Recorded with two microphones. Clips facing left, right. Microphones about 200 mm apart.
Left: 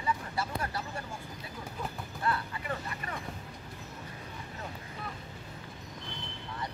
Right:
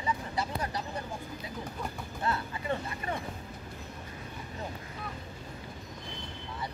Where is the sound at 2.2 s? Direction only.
25° right (ahead or behind).